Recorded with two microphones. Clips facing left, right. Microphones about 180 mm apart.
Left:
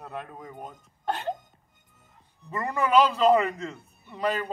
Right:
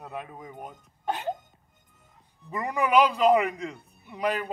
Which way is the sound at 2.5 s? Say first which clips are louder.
Even; 15° right (ahead or behind).